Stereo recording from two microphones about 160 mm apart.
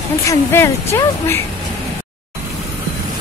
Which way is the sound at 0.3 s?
15° left (ahead or behind).